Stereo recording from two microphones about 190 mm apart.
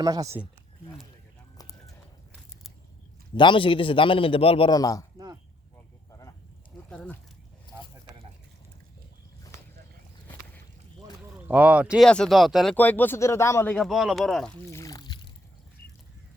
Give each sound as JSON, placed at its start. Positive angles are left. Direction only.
{"t": 0.0, "sound": "speech", "side_deg": -20}
{"t": 3.3, "sound": "a man's voice", "side_deg": 25}
{"t": 5.1, "sound": "a sound", "side_deg": -20}
{"t": 6.9, "sound": "speech", "side_deg": 5}
{"t": 11.4, "sound": "speech", "side_deg": -5}
{"t": 13.7, "sound": "speech", "side_deg": 0}